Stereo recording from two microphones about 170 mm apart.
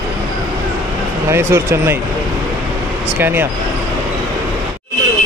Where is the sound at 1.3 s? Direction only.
15° right (ahead or behind).